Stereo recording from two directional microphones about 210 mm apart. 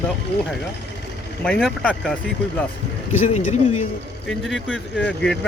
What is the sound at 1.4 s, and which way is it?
Speech, 5° left (ahead or behind).